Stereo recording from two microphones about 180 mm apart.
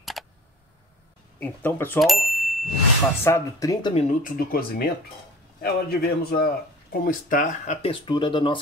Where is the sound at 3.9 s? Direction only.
45° left (ahead or behind).